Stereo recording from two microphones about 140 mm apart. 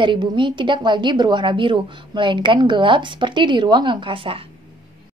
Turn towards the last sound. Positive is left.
turn(degrees=-40)  # may be behind; listen again after turning